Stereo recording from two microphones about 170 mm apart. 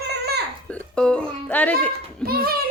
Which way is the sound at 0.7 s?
5° left (ahead or behind).